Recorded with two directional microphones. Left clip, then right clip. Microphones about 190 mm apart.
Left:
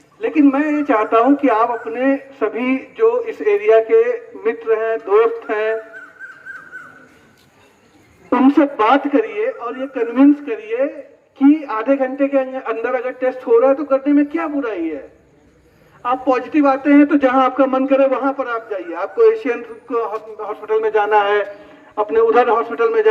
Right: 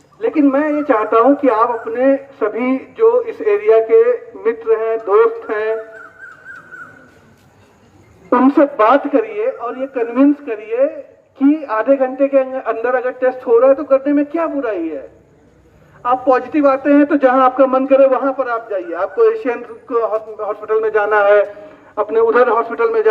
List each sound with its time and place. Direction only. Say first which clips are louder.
0.4 s speech: right 2 dB; 30° left (ahead or behind)
8.3 s a man's voice: right 2 dB; 30° left (ahead or behind)
16.0 s a man's voice: right 4 dB; 30° left (ahead or behind)